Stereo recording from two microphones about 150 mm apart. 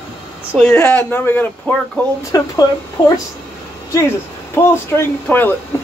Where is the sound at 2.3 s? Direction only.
25° left (ahead or behind).